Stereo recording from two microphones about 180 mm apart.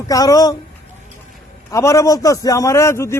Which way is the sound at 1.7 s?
15° left (ahead or behind).